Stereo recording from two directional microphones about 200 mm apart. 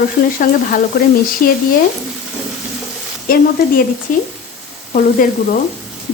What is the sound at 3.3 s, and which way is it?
Speech, 45° left (ahead or behind).